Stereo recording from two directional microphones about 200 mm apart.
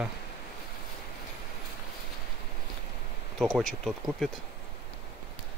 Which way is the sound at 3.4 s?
Centre (ahead or behind).